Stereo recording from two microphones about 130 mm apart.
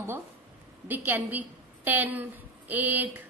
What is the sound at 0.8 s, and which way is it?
A woman's voice, 15° right (ahead or behind).